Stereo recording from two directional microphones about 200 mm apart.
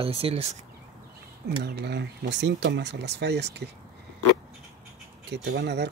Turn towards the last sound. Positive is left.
turn(degrees=-60)  # may be behind; listen again after turning